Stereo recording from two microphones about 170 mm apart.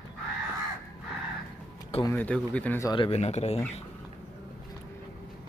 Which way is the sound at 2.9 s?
35° left (ahead or behind).